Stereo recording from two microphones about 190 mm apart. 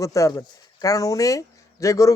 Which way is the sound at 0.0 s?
15° left (ahead or behind).